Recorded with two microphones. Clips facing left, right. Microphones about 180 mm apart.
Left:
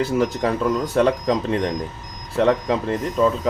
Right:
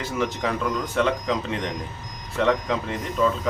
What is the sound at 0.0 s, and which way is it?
Speech, 40° left (ahead or behind).